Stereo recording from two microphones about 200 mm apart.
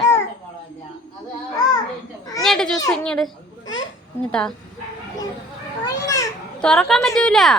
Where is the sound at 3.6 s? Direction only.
70° left (ahead or behind).